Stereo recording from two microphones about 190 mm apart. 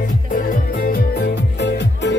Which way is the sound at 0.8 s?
45° left (ahead or behind).